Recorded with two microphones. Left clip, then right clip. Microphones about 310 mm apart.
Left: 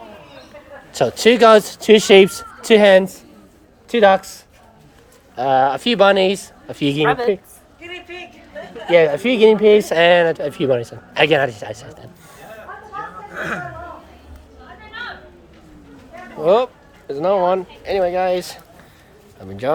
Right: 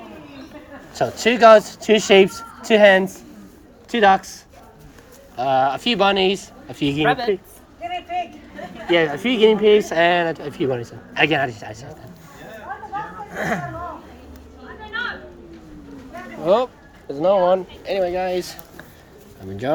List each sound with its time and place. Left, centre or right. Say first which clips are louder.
0.9 s speech: left 5 dB; left
5.4 s speech: left 3 dB; centre
8.9 s speech: left 5 dB; left
13.3 s speech: right 1 dB; centre
16.4 s speech: left 3 dB; centre
19.6 s speech: left 2 dB; centre